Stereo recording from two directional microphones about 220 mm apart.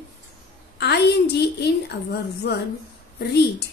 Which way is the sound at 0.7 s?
50° left (ahead or behind).